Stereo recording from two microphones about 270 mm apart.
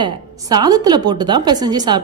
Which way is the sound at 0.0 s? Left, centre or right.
Centre.